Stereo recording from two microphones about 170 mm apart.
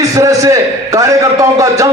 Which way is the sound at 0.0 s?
20° right (ahead or behind).